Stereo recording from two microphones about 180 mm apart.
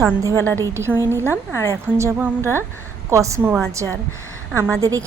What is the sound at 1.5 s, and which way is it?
Speech, 15° left (ahead or behind).